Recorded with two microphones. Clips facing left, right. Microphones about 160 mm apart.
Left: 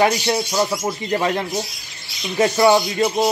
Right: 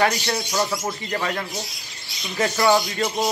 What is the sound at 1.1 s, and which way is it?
Speech, 25° left (ahead or behind).